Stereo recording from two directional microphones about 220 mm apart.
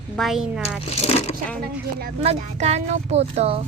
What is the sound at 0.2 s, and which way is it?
Speech, centre (ahead or behind).